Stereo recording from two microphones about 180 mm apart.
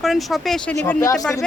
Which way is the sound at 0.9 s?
15° left (ahead or behind).